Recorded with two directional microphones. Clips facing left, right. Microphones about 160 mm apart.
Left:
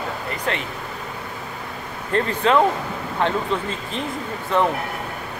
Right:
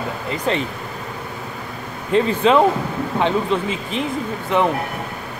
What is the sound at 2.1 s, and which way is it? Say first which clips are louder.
Speech: right 4 dB; 15° right (ahead or behind).